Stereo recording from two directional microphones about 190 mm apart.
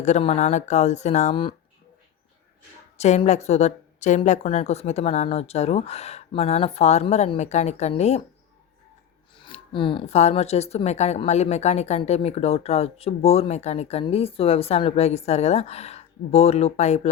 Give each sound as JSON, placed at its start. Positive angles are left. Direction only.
{"t": 0.0, "sound": "speech", "side_deg": 35}
{"t": 3.0, "sound": "speech", "side_deg": 35}
{"t": 9.3, "sound": "speech", "side_deg": 25}